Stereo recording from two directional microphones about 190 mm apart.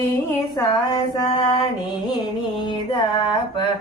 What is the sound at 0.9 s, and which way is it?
Mantra, 20° left (ahead or behind).